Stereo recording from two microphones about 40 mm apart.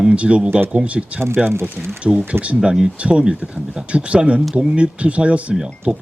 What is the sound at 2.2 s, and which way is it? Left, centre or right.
Speech, right.